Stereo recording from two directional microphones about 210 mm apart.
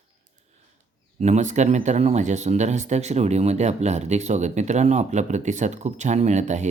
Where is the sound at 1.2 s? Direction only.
35° right (ahead or behind).